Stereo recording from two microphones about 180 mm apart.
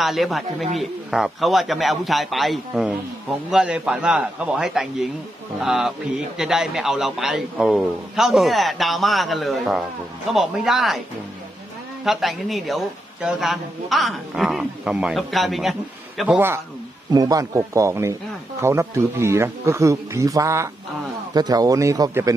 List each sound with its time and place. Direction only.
0.0 s a man's voice: centre (ahead or behind)
12.0 s a man's voice: centre (ahead or behind); by 22.3 s 20° right (ahead or behind)